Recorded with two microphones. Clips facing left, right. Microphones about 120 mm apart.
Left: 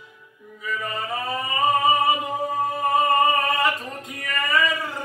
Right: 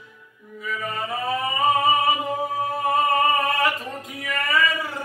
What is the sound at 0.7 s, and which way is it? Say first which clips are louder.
Singing: even; centre (ahead or behind).